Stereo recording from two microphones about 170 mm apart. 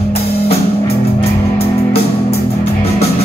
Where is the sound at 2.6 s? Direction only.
35° left (ahead or behind).